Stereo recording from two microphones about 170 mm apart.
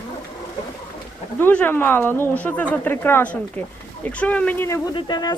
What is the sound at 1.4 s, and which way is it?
Speech, 10° left (ahead or behind).